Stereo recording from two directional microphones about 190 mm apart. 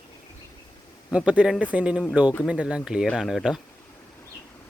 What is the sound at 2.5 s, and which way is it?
Speech, 5° right (ahead or behind).